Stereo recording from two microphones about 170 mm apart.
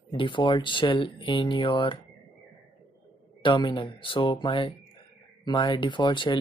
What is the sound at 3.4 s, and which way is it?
Speech, 30° left (ahead or behind).